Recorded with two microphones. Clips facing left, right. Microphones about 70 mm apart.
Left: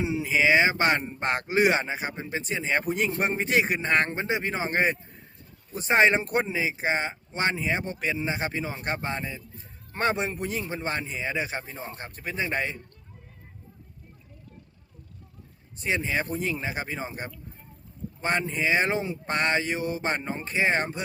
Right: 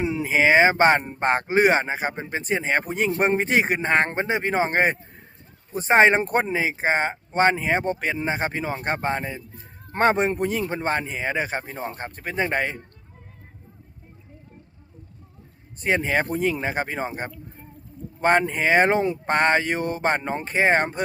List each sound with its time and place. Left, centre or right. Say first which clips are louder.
0.0 s speech: right 3 dB; right
15.8 s speech: right 5 dB; right
18.2 s speech: right 7 dB; right